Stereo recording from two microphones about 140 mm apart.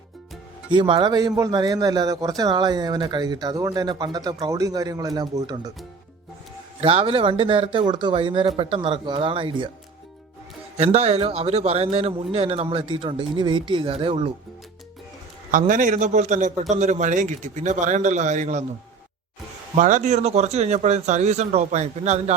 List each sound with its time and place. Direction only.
0.7 s a man's voice: 35° right (ahead or behind)
6.8 s a man's voice: 40° right (ahead or behind)
10.8 s a man's voice: 50° right (ahead or behind)
15.5 s a man's voice: 70° right (ahead or behind)
19.7 s a man's voice: 65° right (ahead or behind)